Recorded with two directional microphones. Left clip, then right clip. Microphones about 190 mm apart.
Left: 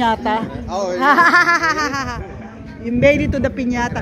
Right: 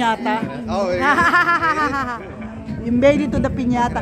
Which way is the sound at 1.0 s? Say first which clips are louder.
Left 4 dB; 20° left (ahead or behind).